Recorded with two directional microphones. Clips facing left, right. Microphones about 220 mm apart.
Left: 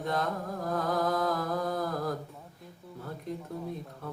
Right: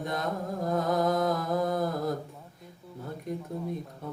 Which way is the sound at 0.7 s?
20° right (ahead or behind).